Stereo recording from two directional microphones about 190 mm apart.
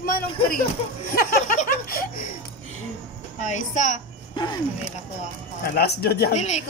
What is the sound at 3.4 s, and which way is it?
Speech, 40° left (ahead or behind).